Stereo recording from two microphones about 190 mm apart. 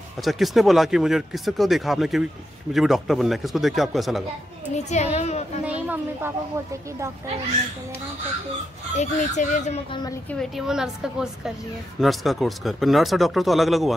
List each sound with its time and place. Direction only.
0.2 s speech: centre (ahead or behind)
4.7 s speech: 35° left (ahead or behind)
5.7 s speech: 10° right (ahead or behind)
8.9 s speech: 40° left (ahead or behind)
9.8 s a woman's voice: 25° left (ahead or behind)
10.4 s speech: centre (ahead or behind)